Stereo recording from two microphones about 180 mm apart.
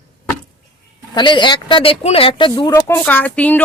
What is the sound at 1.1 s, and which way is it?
Speech, 25° left (ahead or behind).